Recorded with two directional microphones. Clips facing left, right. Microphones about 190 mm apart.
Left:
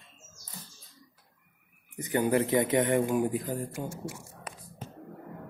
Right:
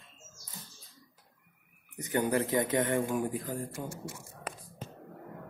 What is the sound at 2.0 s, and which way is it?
Speech, 20° left (ahead or behind).